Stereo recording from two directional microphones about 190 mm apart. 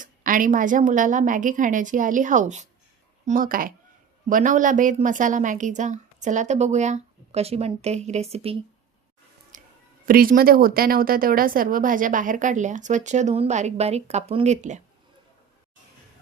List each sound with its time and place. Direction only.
0.0 s a woman's voice: 45° right (ahead or behind)
9.5 s a sound: 45° right (ahead or behind)
10.1 s speech: 50° right (ahead or behind)